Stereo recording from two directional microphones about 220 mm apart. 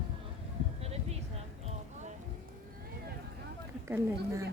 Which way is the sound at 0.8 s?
30° right (ahead or behind).